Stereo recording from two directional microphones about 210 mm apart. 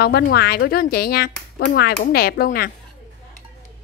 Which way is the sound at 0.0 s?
50° left (ahead or behind).